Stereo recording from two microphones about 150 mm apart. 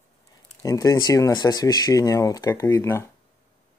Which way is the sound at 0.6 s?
25° left (ahead or behind).